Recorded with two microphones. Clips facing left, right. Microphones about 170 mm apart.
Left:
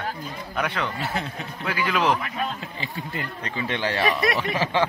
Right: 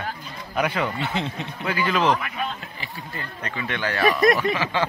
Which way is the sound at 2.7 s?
20° left (ahead or behind).